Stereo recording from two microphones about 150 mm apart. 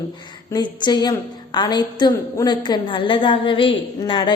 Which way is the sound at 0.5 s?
30° left (ahead or behind).